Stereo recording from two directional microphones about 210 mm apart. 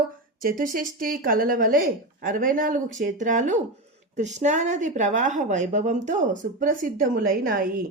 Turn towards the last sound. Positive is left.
turn(degrees=-45)  # may be behind; listen again after turning